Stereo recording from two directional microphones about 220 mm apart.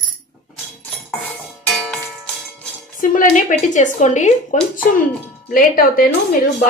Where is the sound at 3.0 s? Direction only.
35° left (ahead or behind).